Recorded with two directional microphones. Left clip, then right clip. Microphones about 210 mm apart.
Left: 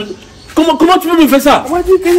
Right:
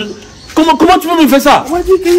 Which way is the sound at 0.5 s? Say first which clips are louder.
Right 1 dB; 40° right (ahead or behind).